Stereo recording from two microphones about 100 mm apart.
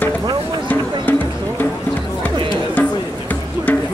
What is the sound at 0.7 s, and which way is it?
Music, 15° left (ahead or behind).